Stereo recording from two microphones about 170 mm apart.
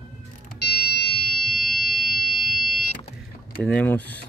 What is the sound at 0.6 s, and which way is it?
Fire alarm, 70° left (ahead or behind).